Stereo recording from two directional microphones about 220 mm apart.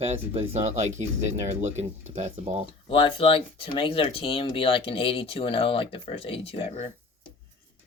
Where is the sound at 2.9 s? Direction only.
25° left (ahead or behind).